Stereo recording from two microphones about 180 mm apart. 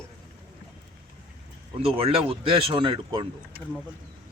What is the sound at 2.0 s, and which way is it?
Speech, 30° right (ahead or behind).